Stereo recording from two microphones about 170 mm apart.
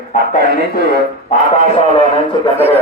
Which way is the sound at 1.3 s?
45° left (ahead or behind).